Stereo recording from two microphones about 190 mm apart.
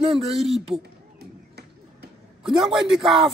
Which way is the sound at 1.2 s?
60° right (ahead or behind).